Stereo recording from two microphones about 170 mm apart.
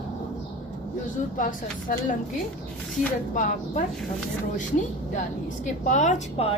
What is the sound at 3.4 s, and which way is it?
Speech, 50° left (ahead or behind).